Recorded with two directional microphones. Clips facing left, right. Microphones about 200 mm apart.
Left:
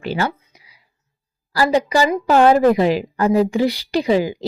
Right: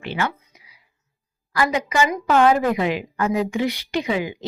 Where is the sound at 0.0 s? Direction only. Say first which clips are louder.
Left 4 dB; 35° left (ahead or behind).